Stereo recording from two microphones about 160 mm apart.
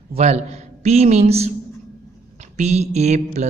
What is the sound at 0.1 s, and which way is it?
A man's voice, 45° right (ahead or behind).